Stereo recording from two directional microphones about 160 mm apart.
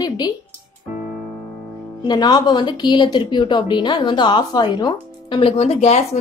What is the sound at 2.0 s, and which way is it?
Speech, 25° left (ahead or behind).